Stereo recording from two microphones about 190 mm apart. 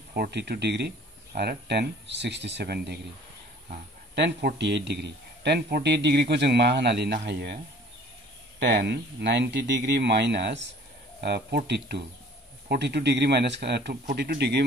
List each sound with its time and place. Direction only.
0.1 s a man's voice: 60° right (ahead or behind)
4.1 s a man's voice: 60° right (ahead or behind)
8.5 s a man's voice: 65° right (ahead or behind)